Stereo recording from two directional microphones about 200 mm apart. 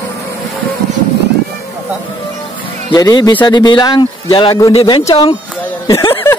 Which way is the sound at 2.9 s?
20° left (ahead or behind).